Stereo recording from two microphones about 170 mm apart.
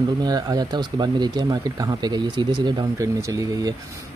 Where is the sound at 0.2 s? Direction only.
25° right (ahead or behind).